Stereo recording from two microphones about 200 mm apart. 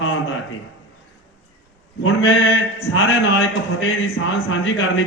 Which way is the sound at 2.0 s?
90° left.